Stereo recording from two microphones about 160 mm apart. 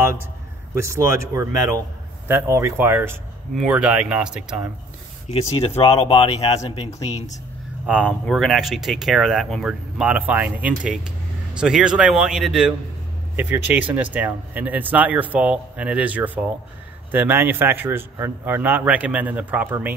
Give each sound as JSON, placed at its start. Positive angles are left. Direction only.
{"t": 0.7, "sound": "a man's voice", "side_deg": -20}
{"t": 5.8, "sound": "speech", "side_deg": 35}
{"t": 7.8, "sound": "a man's voice", "side_deg": -5}